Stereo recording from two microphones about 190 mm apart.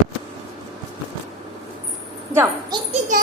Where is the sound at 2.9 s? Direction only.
40° right (ahead or behind).